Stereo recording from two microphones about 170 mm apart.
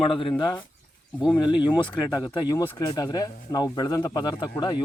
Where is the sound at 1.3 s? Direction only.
25° left (ahead or behind).